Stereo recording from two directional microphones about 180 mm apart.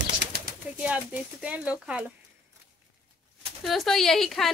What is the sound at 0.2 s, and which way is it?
Pigeon, 70° right (ahead or behind).